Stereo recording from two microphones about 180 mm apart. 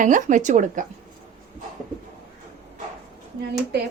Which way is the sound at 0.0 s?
45° right (ahead or behind).